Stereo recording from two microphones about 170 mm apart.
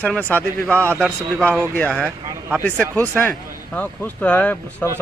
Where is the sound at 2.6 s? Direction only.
5° left (ahead or behind).